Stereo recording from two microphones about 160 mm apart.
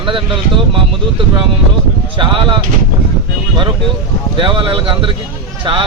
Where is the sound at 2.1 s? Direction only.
30° right (ahead or behind).